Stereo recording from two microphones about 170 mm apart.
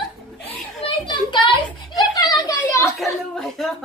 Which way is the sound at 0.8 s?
30° left (ahead or behind).